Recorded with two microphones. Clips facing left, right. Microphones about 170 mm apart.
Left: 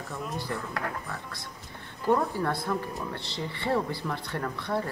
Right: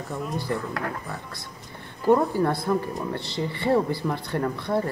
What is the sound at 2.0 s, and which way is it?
Speech, 20° right (ahead or behind).